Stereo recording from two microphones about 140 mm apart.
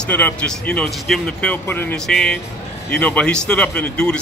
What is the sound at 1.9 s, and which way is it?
Speech, 5° left (ahead or behind).